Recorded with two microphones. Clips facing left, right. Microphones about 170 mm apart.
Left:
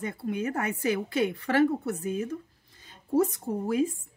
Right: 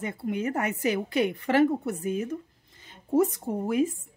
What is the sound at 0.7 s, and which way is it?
A woman's voice, 20° right (ahead or behind).